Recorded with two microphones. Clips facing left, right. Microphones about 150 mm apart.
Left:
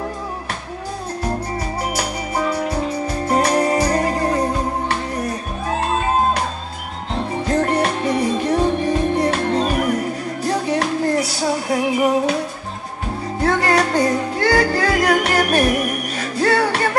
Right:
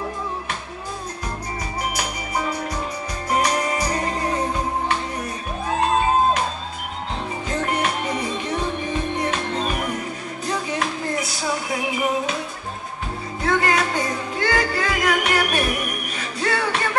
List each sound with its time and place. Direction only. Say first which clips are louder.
2.3 s music: left 5 dB; 40° left (ahead or behind)
7.4 s music: left 6 dB; 40° left (ahead or behind)
13.4 s music: left 4 dB; 35° left (ahead or behind)